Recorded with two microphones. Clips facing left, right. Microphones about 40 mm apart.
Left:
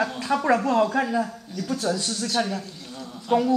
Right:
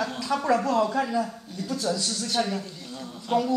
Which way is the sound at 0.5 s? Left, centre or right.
Left.